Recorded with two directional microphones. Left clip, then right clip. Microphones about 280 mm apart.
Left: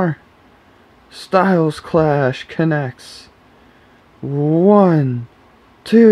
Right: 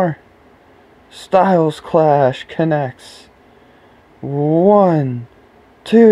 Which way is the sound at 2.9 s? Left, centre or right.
Right.